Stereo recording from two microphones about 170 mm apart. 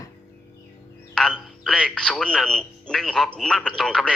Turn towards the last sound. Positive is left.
turn(degrees=5)  # may be behind; listen again after turning